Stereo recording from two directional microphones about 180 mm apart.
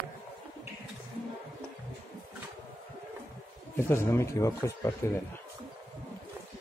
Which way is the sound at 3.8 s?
15° left (ahead or behind).